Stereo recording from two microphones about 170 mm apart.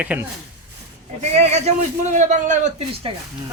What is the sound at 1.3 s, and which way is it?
A man's voice, 40° right (ahead or behind).